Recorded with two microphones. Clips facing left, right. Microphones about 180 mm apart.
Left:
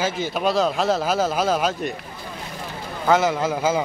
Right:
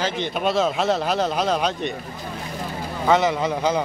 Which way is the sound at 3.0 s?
Centre (ahead or behind).